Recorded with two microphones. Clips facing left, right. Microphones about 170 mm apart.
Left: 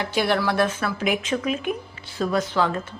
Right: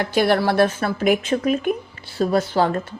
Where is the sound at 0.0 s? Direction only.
50° right (ahead or behind).